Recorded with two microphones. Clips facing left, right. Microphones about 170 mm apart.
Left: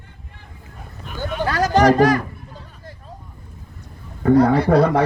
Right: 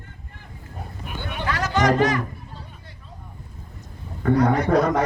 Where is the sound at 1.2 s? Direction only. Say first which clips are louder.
Left 7 dB; 40° left (ahead or behind).